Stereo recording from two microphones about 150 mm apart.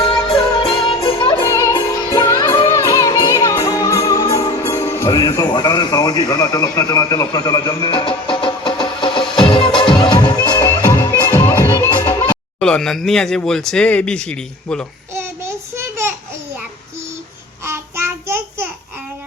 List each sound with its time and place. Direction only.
0.3 s music: 35° left (ahead or behind)
1.4 s music: 20° left (ahead or behind)
10.7 s music: 20° left (ahead or behind)
12.5 s speech: 5° left (ahead or behind)
15.1 s a sound: 15° right (ahead or behind)
17.7 s child singing: 15° right (ahead or behind)